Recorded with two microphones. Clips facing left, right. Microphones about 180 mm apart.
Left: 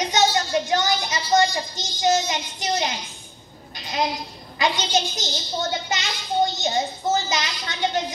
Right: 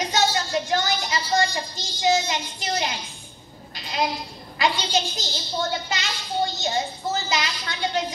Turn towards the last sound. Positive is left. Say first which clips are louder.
# even
turn(degrees=20)  # may be behind; listen again after turning